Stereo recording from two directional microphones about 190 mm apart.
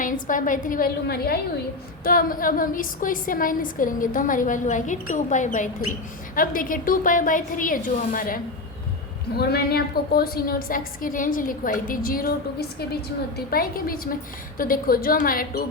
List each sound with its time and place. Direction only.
0.0 s a woman's voice: 45° left (ahead or behind)
9.4 s a woman's voice: 55° left (ahead or behind)